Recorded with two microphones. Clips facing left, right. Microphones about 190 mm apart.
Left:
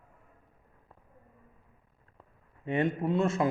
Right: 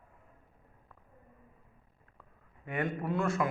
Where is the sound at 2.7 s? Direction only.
25° left (ahead or behind).